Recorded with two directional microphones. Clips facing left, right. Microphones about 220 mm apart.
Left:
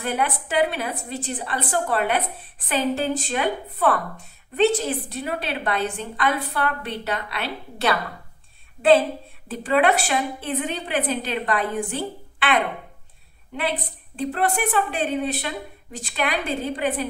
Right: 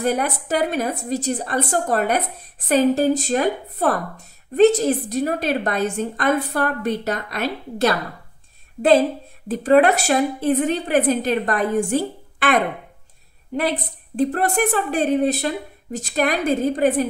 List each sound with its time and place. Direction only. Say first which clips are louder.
0.0 s a woman's voice: right 4 dB; 40° right (ahead or behind)
9.5 s a woman's voice: right 5 dB; 40° right (ahead or behind)